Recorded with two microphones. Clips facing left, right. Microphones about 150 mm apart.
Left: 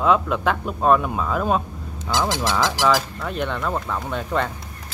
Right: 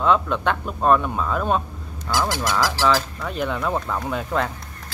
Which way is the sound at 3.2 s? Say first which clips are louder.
Even; centre (ahead or behind).